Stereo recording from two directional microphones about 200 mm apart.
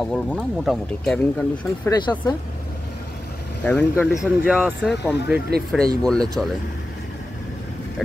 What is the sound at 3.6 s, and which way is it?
Speech, 10° left (ahead or behind).